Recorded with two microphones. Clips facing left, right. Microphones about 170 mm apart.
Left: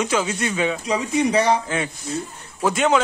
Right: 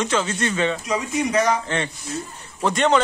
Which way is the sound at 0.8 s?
30° left (ahead or behind).